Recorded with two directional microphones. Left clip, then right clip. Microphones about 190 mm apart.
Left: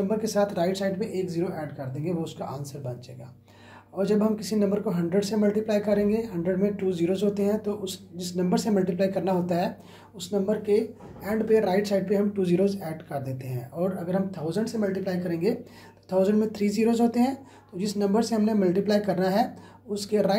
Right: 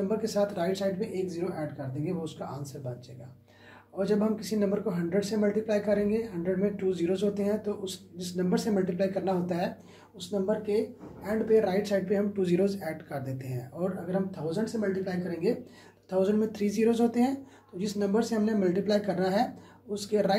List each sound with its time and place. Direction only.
0.1 s speech: 35° left (ahead or behind)
3.9 s speech: 30° left (ahead or behind)
12.4 s speech: 20° left (ahead or behind)
14.0 s speech: 40° left (ahead or behind)
16.1 s speech: 30° left (ahead or behind)